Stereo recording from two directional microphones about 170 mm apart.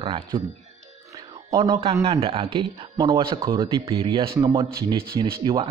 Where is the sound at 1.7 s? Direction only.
35° right (ahead or behind).